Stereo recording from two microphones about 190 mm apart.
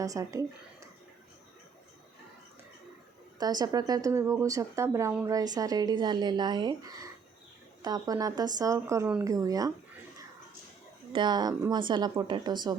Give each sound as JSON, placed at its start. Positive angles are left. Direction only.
{"t": 0.0, "sound": "speech", "side_deg": -15}
{"t": 3.3, "sound": "a woman's voice", "side_deg": -20}
{"t": 11.1, "sound": "a woman's voice", "side_deg": -25}